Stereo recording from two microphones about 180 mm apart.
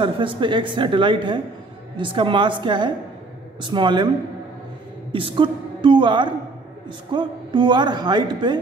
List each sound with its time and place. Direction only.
0.0 s speech: 25° right (ahead or behind)
5.1 s a woman's voice: 30° right (ahead or behind)